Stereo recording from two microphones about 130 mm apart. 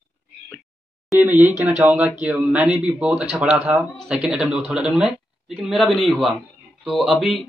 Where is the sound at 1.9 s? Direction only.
10° right (ahead or behind).